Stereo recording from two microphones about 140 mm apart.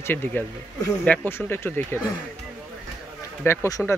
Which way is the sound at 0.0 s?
15° left (ahead or behind).